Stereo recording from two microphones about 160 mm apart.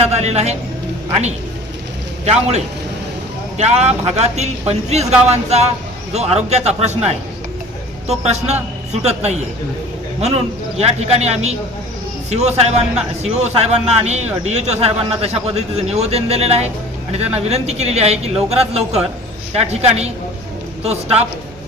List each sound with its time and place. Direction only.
0.0 s speech: 45° right (ahead or behind)
2.2 s speech: 45° right (ahead or behind)
3.6 s speech: 45° right (ahead or behind)
8.2 s a man's voice: 45° right (ahead or behind)